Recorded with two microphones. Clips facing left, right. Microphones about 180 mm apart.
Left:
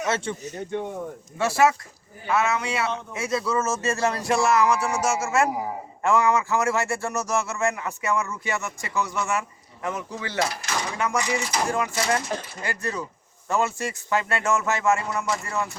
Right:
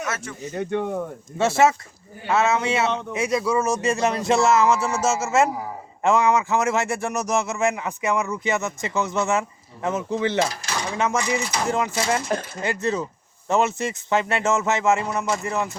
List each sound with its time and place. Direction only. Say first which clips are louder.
0.1 s speech: left 5 dB; 30° left (ahead or behind)
0.5 s speech: right 8 dB; 65° right (ahead or behind)
1.4 s speech: right 2 dB; 25° right (ahead or behind)